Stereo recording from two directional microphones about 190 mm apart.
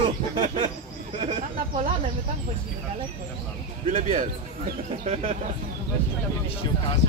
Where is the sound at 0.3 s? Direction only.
25° right (ahead or behind).